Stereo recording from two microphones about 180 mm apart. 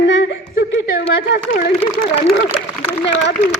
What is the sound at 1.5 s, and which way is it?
Speech, 55° left (ahead or behind).